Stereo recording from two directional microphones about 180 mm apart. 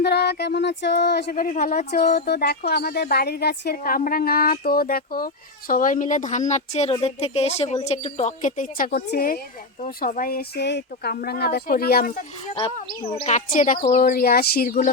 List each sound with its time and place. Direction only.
0.0 s a sound: 65° left (ahead or behind)
1.4 s speech: 50° left (ahead or behind)
2.0 s speech: 60° left (ahead or behind)
13.2 s speech: 45° left (ahead or behind)